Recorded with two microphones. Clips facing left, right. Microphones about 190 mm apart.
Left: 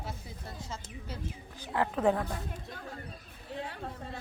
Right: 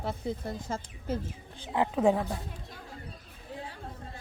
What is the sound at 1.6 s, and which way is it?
Speech, 15° right (ahead or behind).